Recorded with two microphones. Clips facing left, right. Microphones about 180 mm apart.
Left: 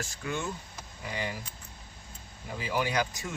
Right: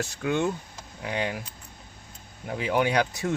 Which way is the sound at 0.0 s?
70° right (ahead or behind).